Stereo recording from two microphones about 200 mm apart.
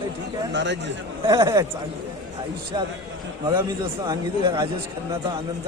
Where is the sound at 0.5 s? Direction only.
60° right (ahead or behind).